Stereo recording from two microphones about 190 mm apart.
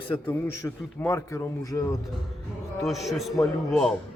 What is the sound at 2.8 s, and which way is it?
Speech, centre (ahead or behind).